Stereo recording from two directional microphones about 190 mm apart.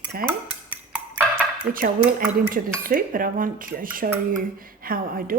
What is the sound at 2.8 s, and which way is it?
A woman's voice, 45° right (ahead or behind).